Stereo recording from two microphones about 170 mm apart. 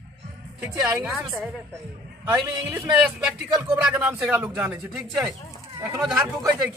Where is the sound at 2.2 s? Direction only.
15° right (ahead or behind).